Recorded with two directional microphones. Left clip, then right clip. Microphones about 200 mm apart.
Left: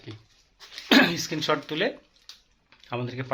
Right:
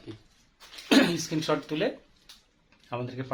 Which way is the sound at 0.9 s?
15° left (ahead or behind).